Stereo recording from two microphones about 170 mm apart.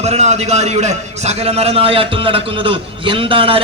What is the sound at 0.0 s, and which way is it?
A man's voice, 40° right (ahead or behind).